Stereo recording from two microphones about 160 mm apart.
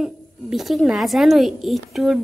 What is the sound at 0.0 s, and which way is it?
Speech, centre (ahead or behind).